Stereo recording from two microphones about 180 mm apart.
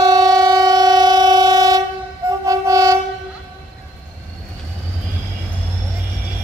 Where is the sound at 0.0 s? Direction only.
20° right (ahead or behind).